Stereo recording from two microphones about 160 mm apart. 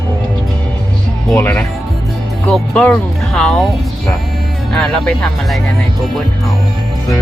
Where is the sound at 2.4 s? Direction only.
5° left (ahead or behind).